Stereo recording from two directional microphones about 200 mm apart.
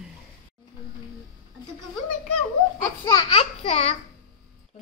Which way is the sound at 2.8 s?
15° left (ahead or behind).